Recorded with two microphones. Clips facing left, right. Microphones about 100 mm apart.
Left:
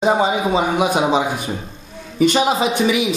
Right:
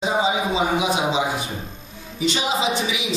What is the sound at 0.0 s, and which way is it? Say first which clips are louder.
A man's voice: left 5 dB; 55° left (ahead or behind).